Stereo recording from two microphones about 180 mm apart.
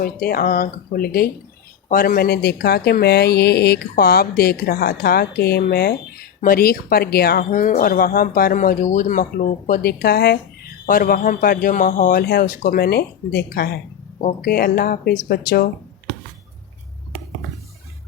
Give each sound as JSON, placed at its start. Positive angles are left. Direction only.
{"t": 0.0, "sound": "speech", "side_deg": 55}